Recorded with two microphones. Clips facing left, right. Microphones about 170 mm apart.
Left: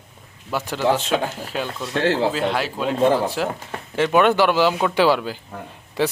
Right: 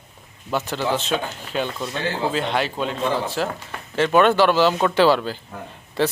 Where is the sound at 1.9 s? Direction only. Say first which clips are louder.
Left 6 dB; 80° left.